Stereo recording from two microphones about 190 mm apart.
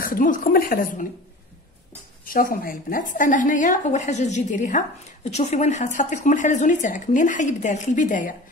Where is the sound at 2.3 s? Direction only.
50° left (ahead or behind).